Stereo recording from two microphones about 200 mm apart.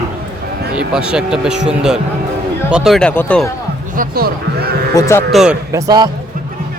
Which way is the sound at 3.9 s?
45° right (ahead or behind).